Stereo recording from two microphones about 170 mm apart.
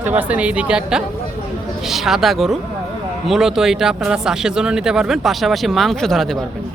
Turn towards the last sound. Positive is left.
turn(degrees=0)  # may be behind; listen again after turning